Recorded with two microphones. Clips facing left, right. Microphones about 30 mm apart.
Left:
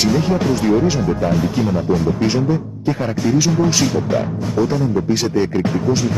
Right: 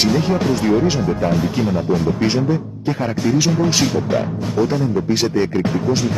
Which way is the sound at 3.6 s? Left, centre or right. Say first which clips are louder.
Even; centre.